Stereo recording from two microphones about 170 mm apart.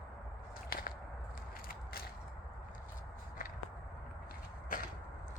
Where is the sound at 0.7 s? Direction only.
55° left (ahead or behind).